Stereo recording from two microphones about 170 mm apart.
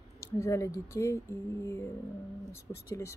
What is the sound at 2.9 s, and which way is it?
Speech, 15° left (ahead or behind).